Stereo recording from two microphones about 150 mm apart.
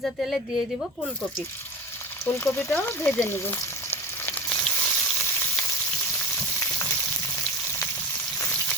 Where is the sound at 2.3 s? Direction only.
15° left (ahead or behind).